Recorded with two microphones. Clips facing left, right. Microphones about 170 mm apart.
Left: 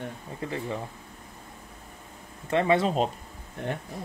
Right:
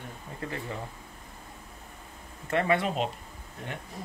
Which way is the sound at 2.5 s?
25° left (ahead or behind).